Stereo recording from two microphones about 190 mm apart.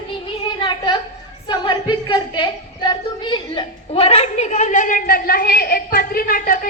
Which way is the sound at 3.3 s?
25° left (ahead or behind).